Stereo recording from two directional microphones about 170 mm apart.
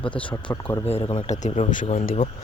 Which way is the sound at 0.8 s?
35° left (ahead or behind).